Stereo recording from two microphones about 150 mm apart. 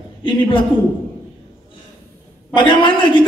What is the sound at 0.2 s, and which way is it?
Speech, 35° left (ahead or behind).